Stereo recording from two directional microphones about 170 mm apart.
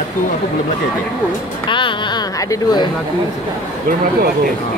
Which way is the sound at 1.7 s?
30° left (ahead or behind).